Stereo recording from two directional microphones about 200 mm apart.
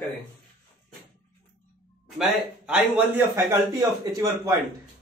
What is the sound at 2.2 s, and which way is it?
Speech, 5° right (ahead or behind).